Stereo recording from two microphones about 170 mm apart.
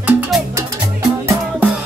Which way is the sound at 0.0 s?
10° right (ahead or behind).